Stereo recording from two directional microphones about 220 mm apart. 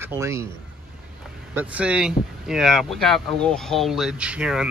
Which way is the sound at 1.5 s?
5° right (ahead or behind).